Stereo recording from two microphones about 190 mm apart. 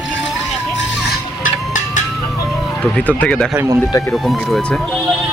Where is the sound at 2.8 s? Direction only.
5° left (ahead or behind).